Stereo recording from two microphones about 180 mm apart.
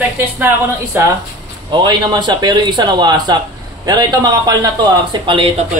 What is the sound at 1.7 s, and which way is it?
A man's voice, 25° right (ahead or behind).